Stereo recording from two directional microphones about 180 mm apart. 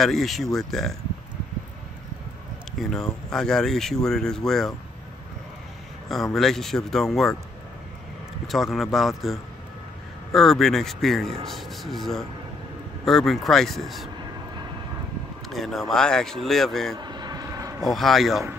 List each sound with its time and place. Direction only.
0.0 s speech: centre (ahead or behind)
2.8 s speech: 5° left (ahead or behind)
6.3 s speech: centre (ahead or behind)
8.5 s speech: centre (ahead or behind)
15.5 s speech: centre (ahead or behind)
16.9 s vehicle: 25° right (ahead or behind)
17.8 s speech: centre (ahead or behind)